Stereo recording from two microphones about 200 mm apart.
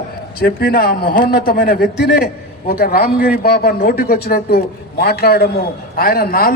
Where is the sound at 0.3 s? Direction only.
50° left (ahead or behind).